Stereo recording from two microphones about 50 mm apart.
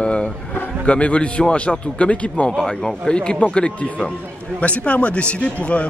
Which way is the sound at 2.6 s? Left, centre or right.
Centre.